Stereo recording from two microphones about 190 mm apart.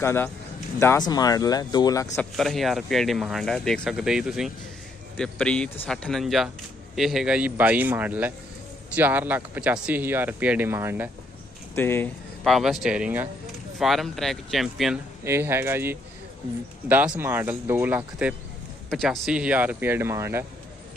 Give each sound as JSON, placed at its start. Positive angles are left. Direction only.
{"t": 0.0, "sound": "speech", "side_deg": 10}
{"t": 2.3, "sound": "speech", "side_deg": 0}
{"t": 11.7, "sound": "speech", "side_deg": 10}
{"t": 12.4, "sound": "speech", "side_deg": 0}
{"t": 15.2, "sound": "speech", "side_deg": -15}